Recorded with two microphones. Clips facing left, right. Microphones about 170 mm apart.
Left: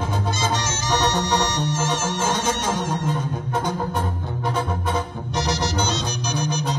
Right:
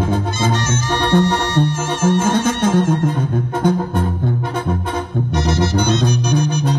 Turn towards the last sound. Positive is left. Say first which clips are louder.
# right 7 dB
turn(degrees=-55)  # may be behind; listen again after turning